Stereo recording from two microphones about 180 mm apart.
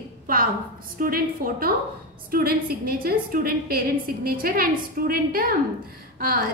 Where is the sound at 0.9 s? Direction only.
55° right (ahead or behind).